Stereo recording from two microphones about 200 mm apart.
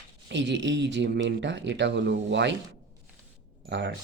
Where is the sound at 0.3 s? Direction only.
65° right (ahead or behind).